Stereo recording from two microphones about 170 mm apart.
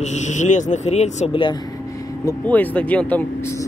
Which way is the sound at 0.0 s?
45° left (ahead or behind).